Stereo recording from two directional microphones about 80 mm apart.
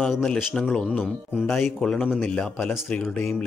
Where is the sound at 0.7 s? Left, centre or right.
Centre.